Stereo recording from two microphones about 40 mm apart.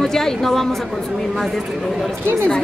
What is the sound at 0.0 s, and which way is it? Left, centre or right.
Speech, centre.